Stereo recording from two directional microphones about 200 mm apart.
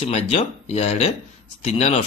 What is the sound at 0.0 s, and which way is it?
Speech, 35° left (ahead or behind).